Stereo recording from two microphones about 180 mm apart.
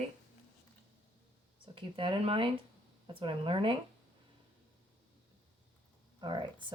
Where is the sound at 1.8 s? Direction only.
30° right (ahead or behind).